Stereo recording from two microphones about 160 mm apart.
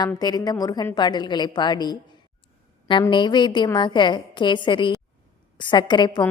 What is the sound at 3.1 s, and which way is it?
A woman's voice, 30° left (ahead or behind).